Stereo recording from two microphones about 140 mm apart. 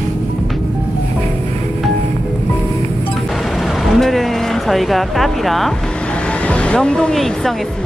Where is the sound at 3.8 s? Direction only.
Centre (ahead or behind).